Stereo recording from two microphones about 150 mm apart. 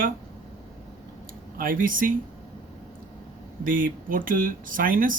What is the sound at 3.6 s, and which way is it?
Speech, 65° right (ahead or behind).